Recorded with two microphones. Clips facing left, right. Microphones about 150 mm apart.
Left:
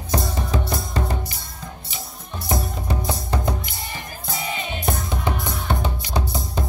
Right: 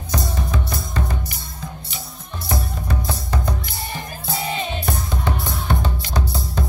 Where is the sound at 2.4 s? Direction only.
20° left (ahead or behind).